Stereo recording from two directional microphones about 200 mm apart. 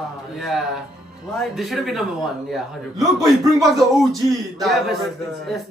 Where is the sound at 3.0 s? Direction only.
15° right (ahead or behind).